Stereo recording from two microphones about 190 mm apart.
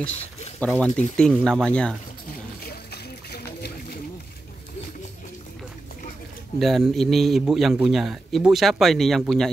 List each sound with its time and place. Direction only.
0.6 s a man's voice: 5° left (ahead or behind)
2.6 s a sound: 55° left (ahead or behind)
6.6 s a man's voice: centre (ahead or behind)